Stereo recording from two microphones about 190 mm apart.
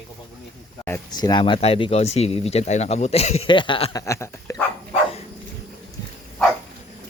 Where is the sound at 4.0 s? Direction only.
15° left (ahead or behind).